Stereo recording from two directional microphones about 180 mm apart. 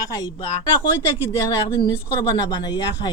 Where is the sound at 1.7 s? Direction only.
20° left (ahead or behind).